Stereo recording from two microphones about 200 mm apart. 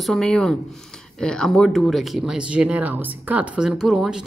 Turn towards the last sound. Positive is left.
turn(degrees=0)  # may be behind; listen again after turning